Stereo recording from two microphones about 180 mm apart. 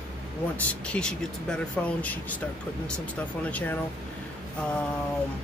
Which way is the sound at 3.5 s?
10° left (ahead or behind).